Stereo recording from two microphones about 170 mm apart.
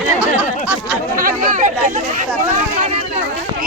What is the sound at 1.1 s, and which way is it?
Speech, 50° right (ahead or behind).